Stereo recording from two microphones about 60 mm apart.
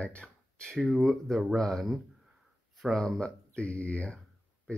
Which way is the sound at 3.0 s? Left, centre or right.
Centre.